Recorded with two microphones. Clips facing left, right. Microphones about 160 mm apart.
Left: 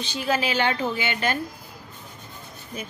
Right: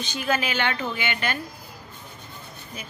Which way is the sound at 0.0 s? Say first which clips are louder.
Left 1 dB; 30° left (ahead or behind).